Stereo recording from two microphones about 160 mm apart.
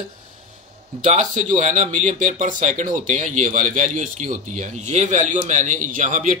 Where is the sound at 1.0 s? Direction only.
50° right (ahead or behind).